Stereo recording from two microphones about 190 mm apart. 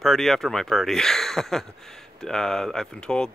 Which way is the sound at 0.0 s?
Centre (ahead or behind).